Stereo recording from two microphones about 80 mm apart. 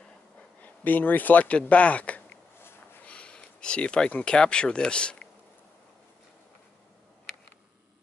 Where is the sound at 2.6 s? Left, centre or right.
Left.